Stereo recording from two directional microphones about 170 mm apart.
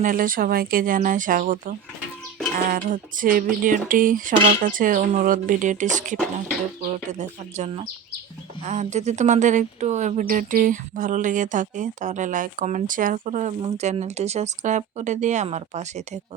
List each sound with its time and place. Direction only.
0.0 s speech: 55° right (ahead or behind)